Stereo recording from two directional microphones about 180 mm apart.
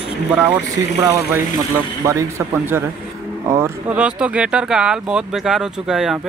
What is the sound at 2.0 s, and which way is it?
Speech, 15° right (ahead or behind).